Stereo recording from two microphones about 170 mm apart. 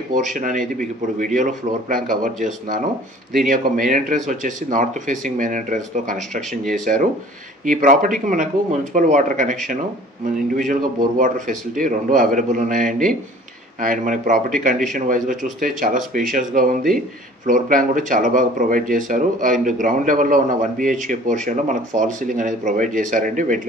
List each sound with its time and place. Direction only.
0.1 s speech: 50° right (ahead or behind)
11.1 s speech: 50° right (ahead or behind)